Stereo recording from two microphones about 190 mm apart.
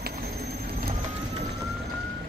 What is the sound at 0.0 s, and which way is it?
Pigeon, 55° right (ahead or behind).